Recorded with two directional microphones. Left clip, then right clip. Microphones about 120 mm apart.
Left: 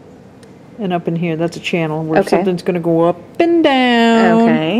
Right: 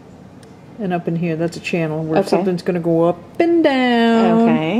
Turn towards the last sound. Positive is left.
turn(degrees=0)  # may be behind; listen again after turning